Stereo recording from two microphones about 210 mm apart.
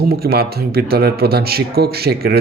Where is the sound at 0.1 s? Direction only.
45° right (ahead or behind).